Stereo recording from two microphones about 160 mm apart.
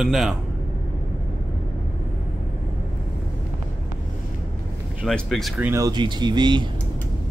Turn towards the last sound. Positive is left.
turn(degrees=-25)  # may be behind; listen again after turning